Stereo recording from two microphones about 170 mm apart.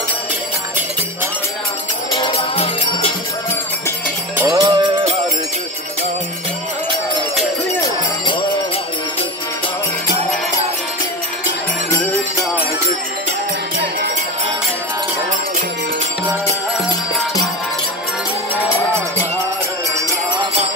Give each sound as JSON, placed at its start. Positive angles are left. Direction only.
{"t": 2.1, "sound": "music", "side_deg": 30}
{"t": 4.4, "sound": "music", "side_deg": -20}